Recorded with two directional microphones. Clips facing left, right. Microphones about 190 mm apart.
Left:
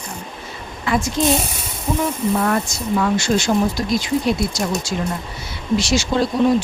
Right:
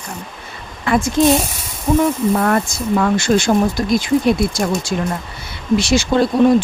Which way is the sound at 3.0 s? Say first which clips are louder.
Right 3 dB; 55° right (ahead or behind).